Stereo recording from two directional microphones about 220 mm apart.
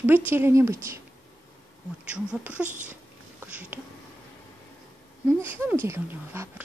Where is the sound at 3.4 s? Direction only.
10° right (ahead or behind).